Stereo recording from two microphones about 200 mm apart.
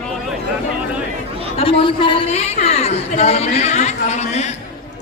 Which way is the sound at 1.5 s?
25° left (ahead or behind).